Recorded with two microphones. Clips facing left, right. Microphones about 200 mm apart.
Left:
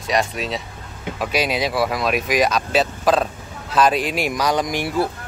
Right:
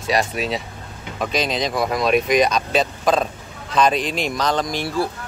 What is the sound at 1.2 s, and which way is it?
Speech, 10° left (ahead or behind).